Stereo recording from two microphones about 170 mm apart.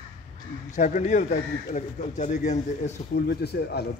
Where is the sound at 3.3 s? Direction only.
70° left (ahead or behind).